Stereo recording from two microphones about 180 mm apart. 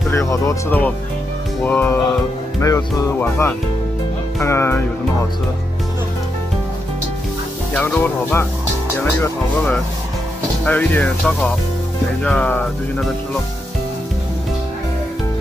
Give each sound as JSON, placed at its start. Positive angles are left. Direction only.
{"t": 0.1, "sound": "speech", "side_deg": 15}
{"t": 7.7, "sound": "speech", "side_deg": 10}
{"t": 10.6, "sound": "speech", "side_deg": 10}